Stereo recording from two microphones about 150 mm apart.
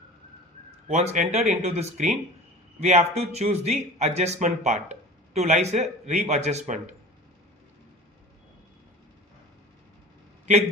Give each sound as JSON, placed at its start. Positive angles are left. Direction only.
{"t": 0.9, "sound": "speech", "side_deg": -50}